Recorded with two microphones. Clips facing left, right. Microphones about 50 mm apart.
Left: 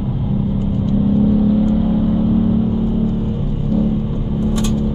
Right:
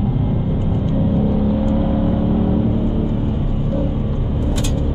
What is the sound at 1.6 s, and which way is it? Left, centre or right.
Vehicle, centre.